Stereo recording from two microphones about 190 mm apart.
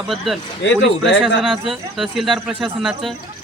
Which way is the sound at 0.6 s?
70° left (ahead or behind).